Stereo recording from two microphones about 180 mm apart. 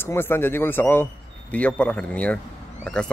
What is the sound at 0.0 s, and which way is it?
Speech, 10° left (ahead or behind).